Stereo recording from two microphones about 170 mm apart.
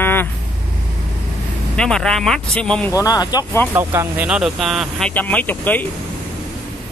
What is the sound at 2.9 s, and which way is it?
Speech, 20° left (ahead or behind).